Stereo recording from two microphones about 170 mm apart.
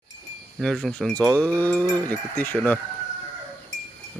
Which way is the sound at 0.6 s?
Centre (ahead or behind).